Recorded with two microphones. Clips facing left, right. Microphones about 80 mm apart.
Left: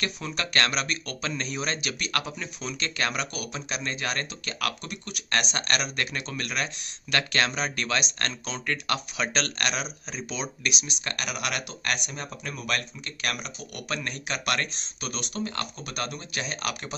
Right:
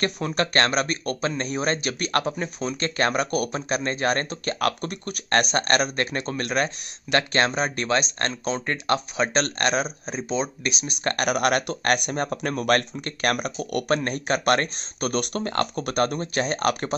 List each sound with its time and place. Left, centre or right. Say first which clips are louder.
0.0 s speech: right 7 dB; right